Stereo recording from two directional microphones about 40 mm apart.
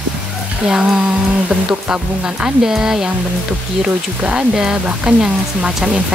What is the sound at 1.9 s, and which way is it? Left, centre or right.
Speech, centre.